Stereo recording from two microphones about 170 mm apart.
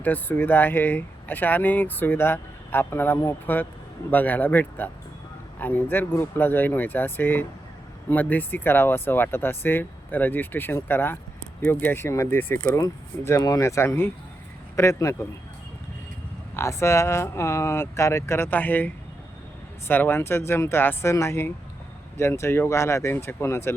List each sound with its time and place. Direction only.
0.0 s speech: 10° left (ahead or behind)
16.6 s speech: 15° left (ahead or behind)
19.9 s speech: 10° left (ahead or behind)